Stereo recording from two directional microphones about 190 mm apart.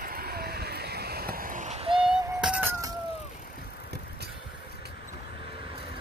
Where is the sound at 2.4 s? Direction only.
5° right (ahead or behind).